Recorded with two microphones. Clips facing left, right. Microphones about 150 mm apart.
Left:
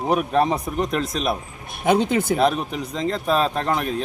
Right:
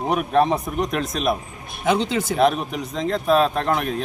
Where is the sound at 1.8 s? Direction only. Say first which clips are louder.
Left 2 dB; 50° left (ahead or behind).